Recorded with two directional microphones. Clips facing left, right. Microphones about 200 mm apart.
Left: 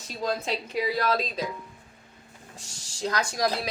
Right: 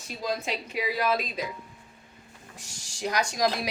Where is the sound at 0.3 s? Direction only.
10° right (ahead or behind).